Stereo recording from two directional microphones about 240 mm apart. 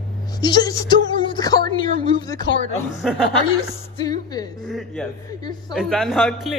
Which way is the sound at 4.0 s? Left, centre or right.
Centre.